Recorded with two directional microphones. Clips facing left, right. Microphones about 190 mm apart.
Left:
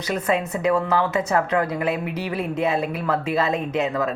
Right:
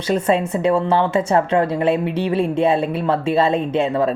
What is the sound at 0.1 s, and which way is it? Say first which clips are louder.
A woman's voice: right 5 dB; 30° right (ahead or behind).